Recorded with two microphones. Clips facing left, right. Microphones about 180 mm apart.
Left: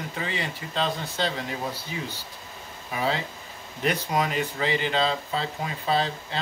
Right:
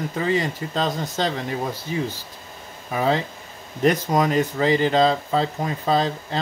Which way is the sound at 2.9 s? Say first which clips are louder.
Right 6 dB; 45° right (ahead or behind).